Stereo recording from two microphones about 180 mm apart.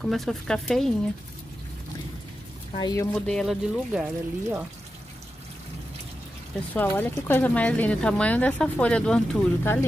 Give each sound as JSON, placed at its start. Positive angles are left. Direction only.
{"t": 0.0, "sound": "speech", "side_deg": 0}
{"t": 2.8, "sound": "speech", "side_deg": 20}
{"t": 3.2, "sound": "speech", "side_deg": 5}
{"t": 6.7, "sound": "speech", "side_deg": 10}